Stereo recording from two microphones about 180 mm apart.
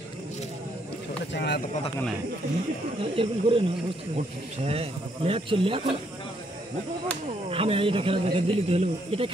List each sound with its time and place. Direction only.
1.3 s speech: 65° left (ahead or behind)
3.0 s speech: 30° right (ahead or behind)
4.6 s speech: 35° right (ahead or behind)
7.4 s speech: 30° right (ahead or behind)